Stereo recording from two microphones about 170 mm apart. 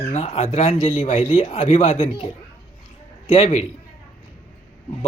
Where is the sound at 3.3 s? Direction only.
35° left (ahead or behind).